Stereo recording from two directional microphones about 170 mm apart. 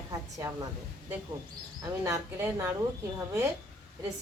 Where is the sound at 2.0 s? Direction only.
15° right (ahead or behind).